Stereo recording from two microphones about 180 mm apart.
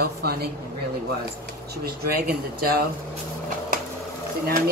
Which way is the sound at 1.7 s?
60° right (ahead or behind).